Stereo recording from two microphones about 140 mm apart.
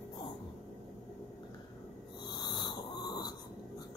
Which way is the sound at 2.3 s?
30° left (ahead or behind).